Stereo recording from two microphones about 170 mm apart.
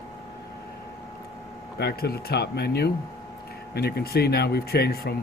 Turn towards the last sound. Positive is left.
turn(degrees=70)  # may be behind; listen again after turning